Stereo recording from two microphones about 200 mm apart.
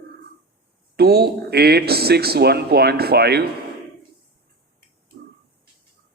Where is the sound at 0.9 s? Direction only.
50° right (ahead or behind).